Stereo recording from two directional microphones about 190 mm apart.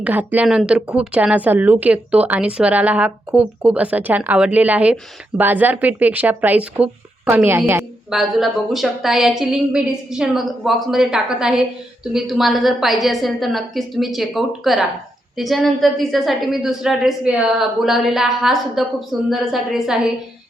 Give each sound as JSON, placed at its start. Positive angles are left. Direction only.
{"t": 0.0, "sound": "a woman's voice", "side_deg": -10}
{"t": 8.1, "sound": "a woman's voice", "side_deg": 0}